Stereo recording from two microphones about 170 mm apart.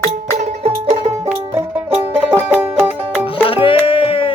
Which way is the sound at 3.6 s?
30° left (ahead or behind).